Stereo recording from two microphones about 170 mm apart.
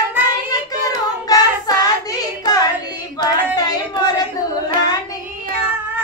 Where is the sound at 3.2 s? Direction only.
25° left (ahead or behind).